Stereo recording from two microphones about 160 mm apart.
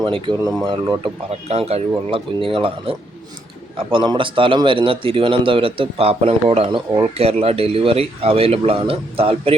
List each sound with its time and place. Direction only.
0.0 s speech: 30° right (ahead or behind)
1.3 s a man's voice: 40° right (ahead or behind)
3.9 s a man's voice: 30° right (ahead or behind)